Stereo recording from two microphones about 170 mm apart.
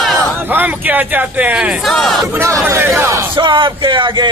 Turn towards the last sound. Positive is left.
turn(degrees=-30)  # may be behind; listen again after turning